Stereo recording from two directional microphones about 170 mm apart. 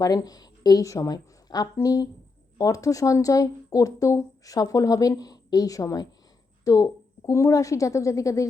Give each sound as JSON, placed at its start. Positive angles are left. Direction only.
{"t": 0.0, "sound": "a woman's voice", "side_deg": 20}